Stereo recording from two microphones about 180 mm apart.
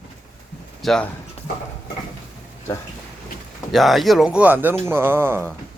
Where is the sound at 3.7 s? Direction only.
Centre (ahead or behind).